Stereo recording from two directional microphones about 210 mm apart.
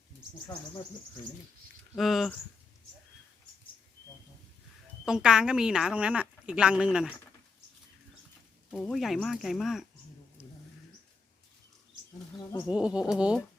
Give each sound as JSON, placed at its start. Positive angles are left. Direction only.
{"t": 2.0, "sound": "speech", "side_deg": 0}
{"t": 5.0, "sound": "speech", "side_deg": -5}
{"t": 8.7, "sound": "speech", "side_deg": 0}
{"t": 12.6, "sound": "speech", "side_deg": -5}